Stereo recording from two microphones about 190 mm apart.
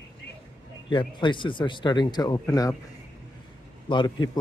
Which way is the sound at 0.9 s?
25° left (ahead or behind).